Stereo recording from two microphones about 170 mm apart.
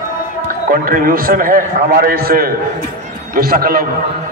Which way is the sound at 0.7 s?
55° right (ahead or behind).